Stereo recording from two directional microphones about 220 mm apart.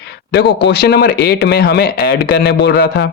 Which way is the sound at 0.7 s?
50° left (ahead or behind).